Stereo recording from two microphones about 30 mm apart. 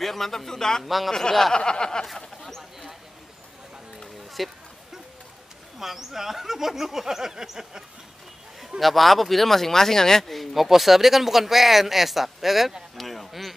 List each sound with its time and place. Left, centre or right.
0.0 s speech: centre
0.8 s speech: centre
1.5 s snicker: left
4.4 s speech: centre
5.8 s speech: centre
8.5 s speech: centre
10.3 s speech: centre
12.9 s a sound: centre